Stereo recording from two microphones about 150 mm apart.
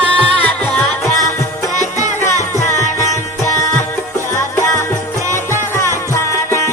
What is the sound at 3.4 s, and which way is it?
Music, 20° left (ahead or behind).